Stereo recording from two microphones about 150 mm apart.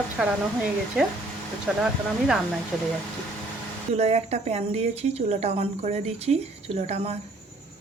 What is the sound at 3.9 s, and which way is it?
A woman's voice, 45° right (ahead or behind).